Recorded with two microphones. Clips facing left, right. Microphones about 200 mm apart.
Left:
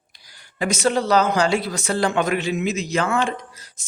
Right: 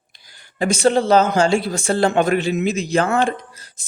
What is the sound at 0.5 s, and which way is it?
A woman's voice, 30° right (ahead or behind).